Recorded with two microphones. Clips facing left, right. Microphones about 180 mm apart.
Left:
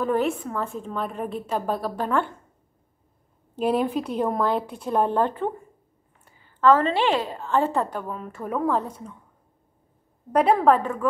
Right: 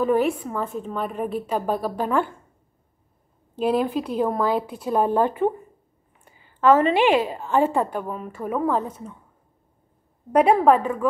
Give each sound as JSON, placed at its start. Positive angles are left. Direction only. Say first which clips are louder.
{"t": 0.0, "sound": "a woman's voice", "louder": "right 3 dB", "side_deg": -5}
{"t": 3.5, "sound": "a woman's voice", "louder": "right 1 dB", "side_deg": 0}
{"t": 10.3, "sound": "a woman's voice", "louder": "right 2 dB", "side_deg": -10}